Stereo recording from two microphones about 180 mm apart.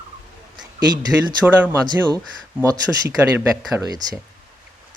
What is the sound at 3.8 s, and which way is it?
Speech, 20° right (ahead or behind).